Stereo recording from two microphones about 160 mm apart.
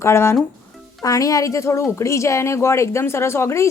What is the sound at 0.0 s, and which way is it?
Speech, 15° left (ahead or behind).